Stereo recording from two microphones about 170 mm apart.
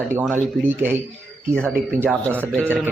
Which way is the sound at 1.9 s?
15° right (ahead or behind).